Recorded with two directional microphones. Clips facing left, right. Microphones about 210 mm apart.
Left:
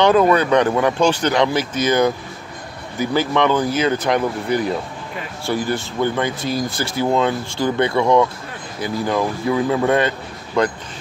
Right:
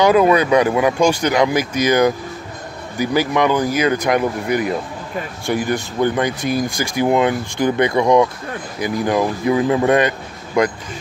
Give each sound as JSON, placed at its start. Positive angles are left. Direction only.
{"t": 0.0, "sound": "speech", "side_deg": -10}